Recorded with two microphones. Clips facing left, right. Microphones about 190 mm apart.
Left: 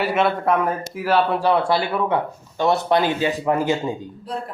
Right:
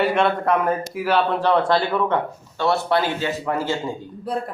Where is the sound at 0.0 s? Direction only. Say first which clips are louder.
Right 1 dB; 5° left (ahead or behind); by 3.9 s 20° left (ahead or behind).